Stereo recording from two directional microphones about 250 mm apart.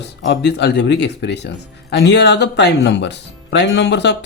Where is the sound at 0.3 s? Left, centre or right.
Left.